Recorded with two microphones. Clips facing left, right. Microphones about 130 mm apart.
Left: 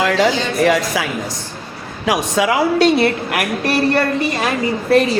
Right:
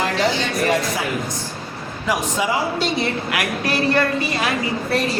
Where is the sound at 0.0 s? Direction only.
90° left.